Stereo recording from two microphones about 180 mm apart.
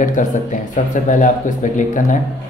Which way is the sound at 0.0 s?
45° left (ahead or behind).